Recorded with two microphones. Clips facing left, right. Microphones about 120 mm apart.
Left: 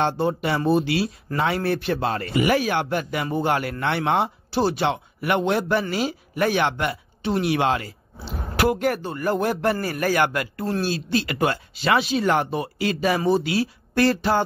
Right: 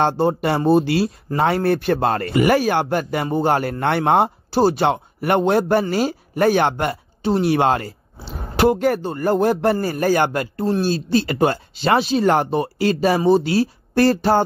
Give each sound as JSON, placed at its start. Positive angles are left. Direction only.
{"t": 0.0, "sound": "a man's voice", "side_deg": -40}
{"t": 3.8, "sound": "speech", "side_deg": -45}
{"t": 8.5, "sound": "a man's voice", "side_deg": -30}